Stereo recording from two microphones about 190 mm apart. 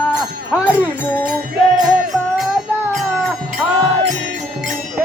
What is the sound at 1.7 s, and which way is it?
Music, 5° right (ahead or behind).